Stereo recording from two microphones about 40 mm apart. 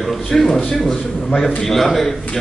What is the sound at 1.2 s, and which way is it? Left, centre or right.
Speech, left.